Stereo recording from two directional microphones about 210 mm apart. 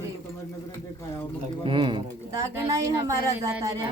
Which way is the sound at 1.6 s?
25° right (ahead or behind).